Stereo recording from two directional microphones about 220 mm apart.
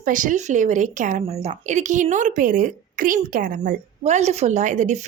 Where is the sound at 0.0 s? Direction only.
35° right (ahead or behind).